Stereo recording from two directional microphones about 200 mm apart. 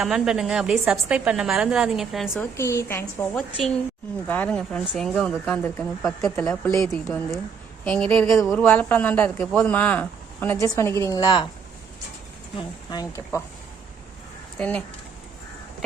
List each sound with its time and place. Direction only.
0.0 s a woman's voice: 5° right (ahead or behind)
2.4 s a woman's voice: 15° left (ahead or behind)
3.3 s a woman's voice: centre (ahead or behind); by 11.4 s 25° left (ahead or behind)
12.5 s speech: 20° left (ahead or behind)
14.6 s a woman's voice: 5° left (ahead or behind)